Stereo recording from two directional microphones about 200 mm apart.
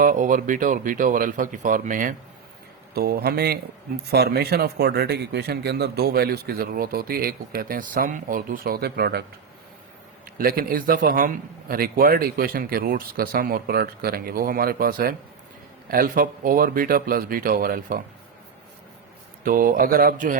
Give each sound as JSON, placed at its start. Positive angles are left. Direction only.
{"t": 0.0, "sound": "speech", "side_deg": -40}
{"t": 10.3, "sound": "speech", "side_deg": -45}
{"t": 19.5, "sound": "speech", "side_deg": -45}